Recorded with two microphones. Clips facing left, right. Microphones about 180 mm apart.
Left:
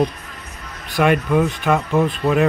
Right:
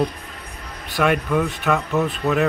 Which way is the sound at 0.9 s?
Centre (ahead or behind).